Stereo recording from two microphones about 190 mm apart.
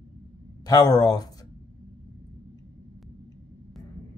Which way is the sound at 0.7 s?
20° left (ahead or behind).